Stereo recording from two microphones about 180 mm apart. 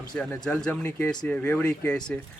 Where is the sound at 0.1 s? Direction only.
5° left (ahead or behind).